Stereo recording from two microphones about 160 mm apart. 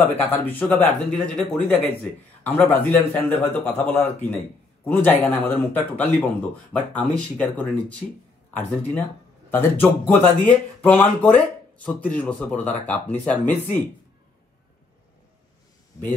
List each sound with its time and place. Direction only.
0.1 s speech: 10° left (ahead or behind)
16.0 s speech: 25° left (ahead or behind)